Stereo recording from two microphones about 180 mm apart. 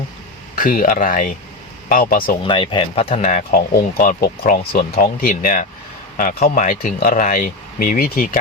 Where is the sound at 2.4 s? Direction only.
25° left (ahead or behind).